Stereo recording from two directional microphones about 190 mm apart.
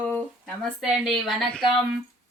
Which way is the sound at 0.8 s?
Centre (ahead or behind).